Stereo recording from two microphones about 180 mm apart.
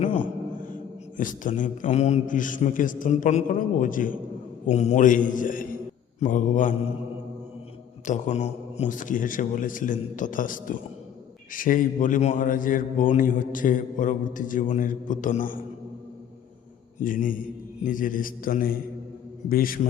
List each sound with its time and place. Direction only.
0.0 s a sound: 45° left (ahead or behind)
1.1 s a man's voice: 45° left (ahead or behind)
4.6 s a man's voice: 40° left (ahead or behind)
8.0 s a man's voice: 40° left (ahead or behind)
17.0 s a man's voice: 50° left (ahead or behind)